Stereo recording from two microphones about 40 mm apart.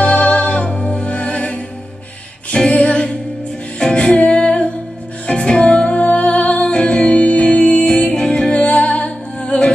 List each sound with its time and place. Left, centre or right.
0.0 s music: left
8.5 s music: left